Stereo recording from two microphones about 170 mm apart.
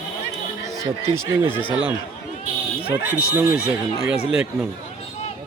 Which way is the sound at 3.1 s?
10° right (ahead or behind).